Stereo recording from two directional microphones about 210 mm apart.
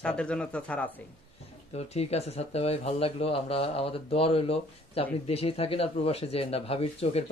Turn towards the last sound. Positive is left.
turn(degrees=30)  # may be behind; listen again after turning